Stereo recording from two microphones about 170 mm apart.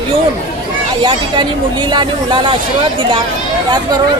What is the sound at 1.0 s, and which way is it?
Speech, 25° right (ahead or behind).